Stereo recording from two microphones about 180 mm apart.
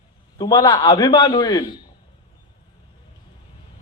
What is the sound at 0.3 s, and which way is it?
A man's voice, 25° left (ahead or behind).